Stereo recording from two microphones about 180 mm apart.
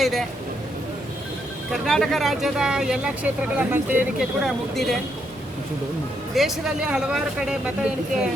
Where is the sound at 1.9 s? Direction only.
Centre (ahead or behind).